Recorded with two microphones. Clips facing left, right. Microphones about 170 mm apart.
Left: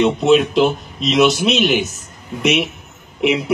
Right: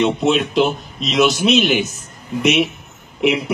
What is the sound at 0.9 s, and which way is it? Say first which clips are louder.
Speech: left 1 dB; centre (ahead or behind).